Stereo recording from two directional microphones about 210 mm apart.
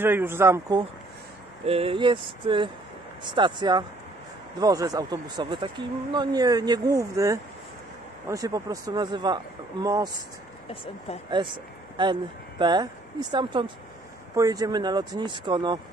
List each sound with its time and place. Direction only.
0.0 s speech: 10° right (ahead or behind)
1.7 s speech: 25° right (ahead or behind)
11.4 s speech: 20° right (ahead or behind)